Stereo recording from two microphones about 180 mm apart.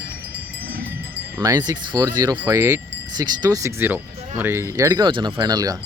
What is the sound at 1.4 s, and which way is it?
Chime, 20° right (ahead or behind).